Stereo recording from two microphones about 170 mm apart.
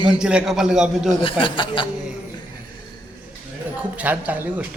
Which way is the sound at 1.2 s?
30° left (ahead or behind).